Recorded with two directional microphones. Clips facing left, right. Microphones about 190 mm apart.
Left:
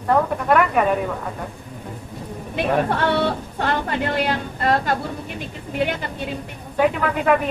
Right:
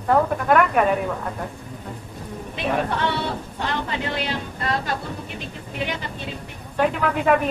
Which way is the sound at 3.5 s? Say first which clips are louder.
Left 3 dB; 55° left (ahead or behind).